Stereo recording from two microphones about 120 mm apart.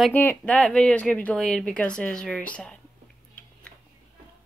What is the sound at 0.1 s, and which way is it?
Speech, 15° left (ahead or behind).